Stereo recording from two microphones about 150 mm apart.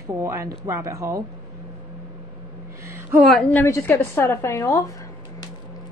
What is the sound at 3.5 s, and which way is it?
A woman's voice, 15° left (ahead or behind).